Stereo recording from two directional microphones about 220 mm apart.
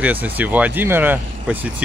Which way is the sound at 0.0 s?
5° right (ahead or behind).